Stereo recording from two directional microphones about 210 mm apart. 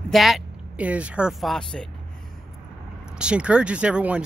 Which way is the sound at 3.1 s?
5° right (ahead or behind).